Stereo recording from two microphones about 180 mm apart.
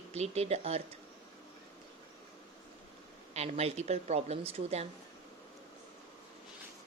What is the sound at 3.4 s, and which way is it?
A woman's voice, 35° right (ahead or behind).